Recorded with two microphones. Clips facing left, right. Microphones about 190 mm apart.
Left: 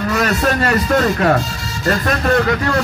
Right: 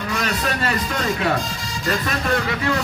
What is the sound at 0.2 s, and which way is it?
Speech, 45° left (ahead or behind).